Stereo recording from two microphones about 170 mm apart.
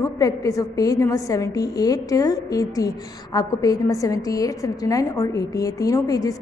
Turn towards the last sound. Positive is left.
turn(degrees=20)  # may be behind; listen again after turning